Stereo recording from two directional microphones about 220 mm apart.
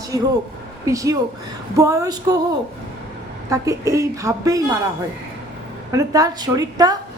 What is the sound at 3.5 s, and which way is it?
A woman's voice, 15° right (ahead or behind).